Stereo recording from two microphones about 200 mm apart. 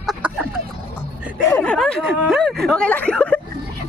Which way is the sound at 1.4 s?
10° left (ahead or behind).